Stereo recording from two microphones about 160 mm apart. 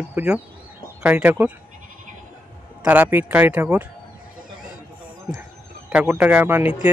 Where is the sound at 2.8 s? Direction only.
10° right (ahead or behind).